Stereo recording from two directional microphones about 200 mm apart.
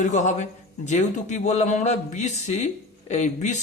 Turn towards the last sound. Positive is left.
turn(degrees=35)  # may be behind; listen again after turning